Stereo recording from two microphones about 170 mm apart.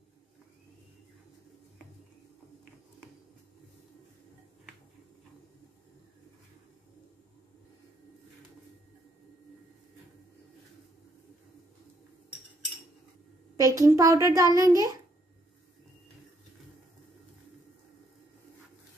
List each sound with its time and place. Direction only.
13.6 s a child's voice: 20° right (ahead or behind)